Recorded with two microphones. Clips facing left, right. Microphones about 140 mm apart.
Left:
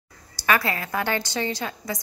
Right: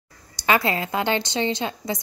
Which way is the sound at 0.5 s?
25° right (ahead or behind).